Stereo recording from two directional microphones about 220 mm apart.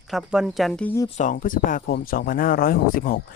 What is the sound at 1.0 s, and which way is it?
Speech, 35° left (ahead or behind).